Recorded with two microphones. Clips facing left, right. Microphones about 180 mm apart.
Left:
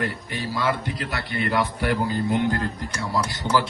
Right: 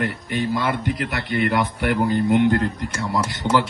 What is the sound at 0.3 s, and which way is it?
Speech, 20° right (ahead or behind).